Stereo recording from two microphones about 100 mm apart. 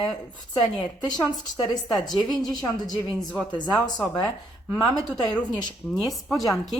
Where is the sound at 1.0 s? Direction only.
45° left (ahead or behind).